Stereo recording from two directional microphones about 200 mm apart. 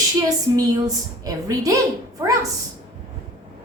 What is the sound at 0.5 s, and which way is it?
A woman's voice, 15° right (ahead or behind).